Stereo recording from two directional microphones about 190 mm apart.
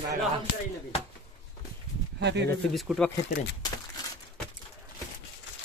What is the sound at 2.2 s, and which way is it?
Speech, 65° right (ahead or behind).